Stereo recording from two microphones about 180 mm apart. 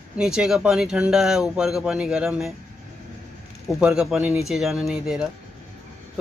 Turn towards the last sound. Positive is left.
turn(degrees=0)  # may be behind; listen again after turning